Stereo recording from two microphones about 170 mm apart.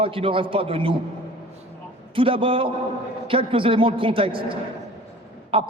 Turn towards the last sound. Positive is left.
turn(degrees=-30)  # may be behind; listen again after turning